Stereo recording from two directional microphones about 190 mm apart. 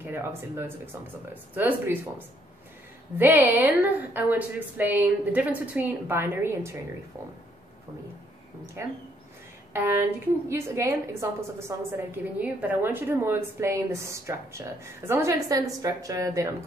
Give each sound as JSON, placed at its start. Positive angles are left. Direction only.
{"t": 0.0, "sound": "a woman's voice", "side_deg": -10}
{"t": 9.7, "sound": "a woman's voice", "side_deg": -10}